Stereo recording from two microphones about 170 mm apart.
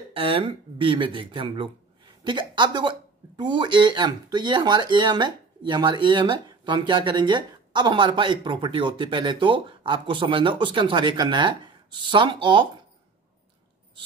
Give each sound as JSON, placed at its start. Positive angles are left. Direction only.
{"t": 0.1, "sound": "speech", "side_deg": -30}